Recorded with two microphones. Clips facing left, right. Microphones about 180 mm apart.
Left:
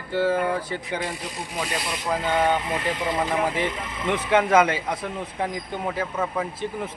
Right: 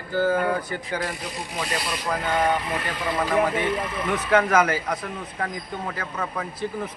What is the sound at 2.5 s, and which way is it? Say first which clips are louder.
Speech: left 2 dB; 25° left (ahead or behind).